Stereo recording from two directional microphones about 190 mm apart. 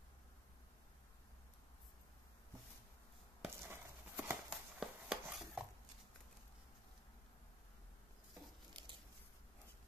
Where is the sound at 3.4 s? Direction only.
10° right (ahead or behind).